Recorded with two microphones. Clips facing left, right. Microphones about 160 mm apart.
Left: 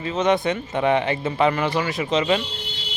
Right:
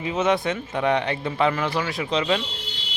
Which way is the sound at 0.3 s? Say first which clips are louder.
Left 4 dB; centre (ahead or behind).